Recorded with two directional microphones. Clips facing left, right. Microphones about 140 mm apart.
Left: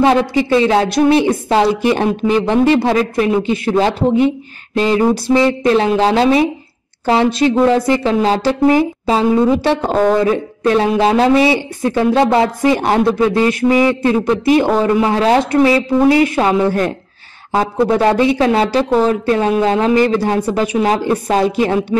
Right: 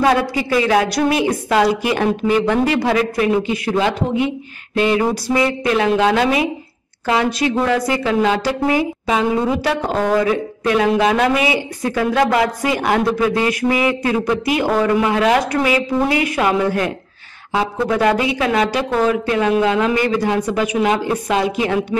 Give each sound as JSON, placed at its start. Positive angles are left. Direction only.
{"t": 0.0, "sound": "a woman's voice", "side_deg": 25}